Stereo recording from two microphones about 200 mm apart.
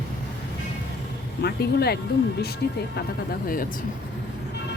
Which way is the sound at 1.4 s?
55° left (ahead or behind).